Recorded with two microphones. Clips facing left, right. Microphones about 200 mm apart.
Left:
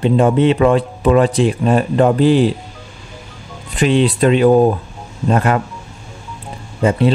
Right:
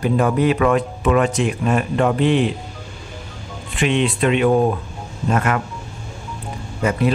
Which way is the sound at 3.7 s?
35° left (ahead or behind).